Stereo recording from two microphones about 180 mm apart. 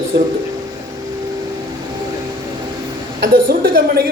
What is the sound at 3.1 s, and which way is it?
Speech, 60° right (ahead or behind).